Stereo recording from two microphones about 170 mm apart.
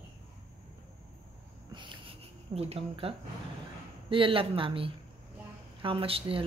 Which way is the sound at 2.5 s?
35° right (ahead or behind).